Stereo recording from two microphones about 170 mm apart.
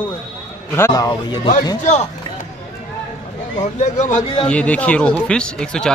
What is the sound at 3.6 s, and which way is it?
Speech, 45° left (ahead or behind).